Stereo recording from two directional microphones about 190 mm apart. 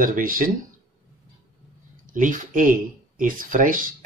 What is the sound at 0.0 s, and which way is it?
Speech, 45° right (ahead or behind).